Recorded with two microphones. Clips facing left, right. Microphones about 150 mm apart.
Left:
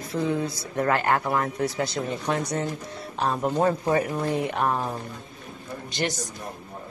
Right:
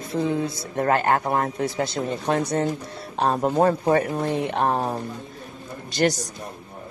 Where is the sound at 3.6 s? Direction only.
55° right (ahead or behind).